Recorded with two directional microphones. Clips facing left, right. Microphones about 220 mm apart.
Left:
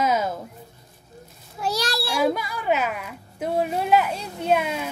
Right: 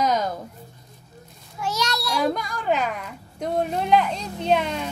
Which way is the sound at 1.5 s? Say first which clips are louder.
Left 1 dB; 35° left (ahead or behind).